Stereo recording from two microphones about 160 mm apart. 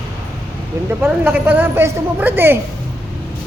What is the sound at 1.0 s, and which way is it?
A man's voice, 10° right (ahead or behind).